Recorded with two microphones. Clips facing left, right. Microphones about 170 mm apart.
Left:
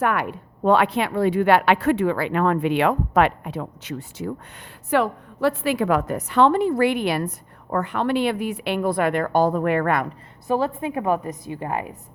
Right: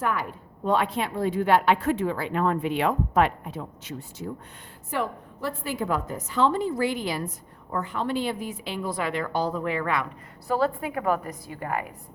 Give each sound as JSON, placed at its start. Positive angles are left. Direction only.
{"t": 0.0, "sound": "a woman's voice", "side_deg": 70}
{"t": 10.4, "sound": "a woman's voice", "side_deg": 20}